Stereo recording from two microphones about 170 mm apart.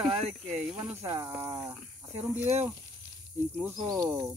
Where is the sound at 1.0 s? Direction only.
15° right (ahead or behind).